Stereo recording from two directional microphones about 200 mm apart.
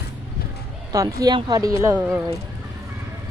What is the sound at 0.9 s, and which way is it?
Speech, 20° right (ahead or behind).